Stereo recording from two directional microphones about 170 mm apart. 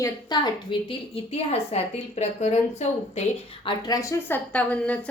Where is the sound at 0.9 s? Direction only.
35° left (ahead or behind).